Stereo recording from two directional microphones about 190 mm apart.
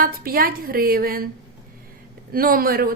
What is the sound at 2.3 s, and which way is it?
Speech, 50° right (ahead or behind).